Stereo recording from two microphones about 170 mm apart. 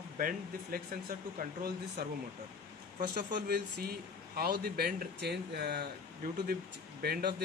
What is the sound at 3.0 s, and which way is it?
Speech, 75° right (ahead or behind).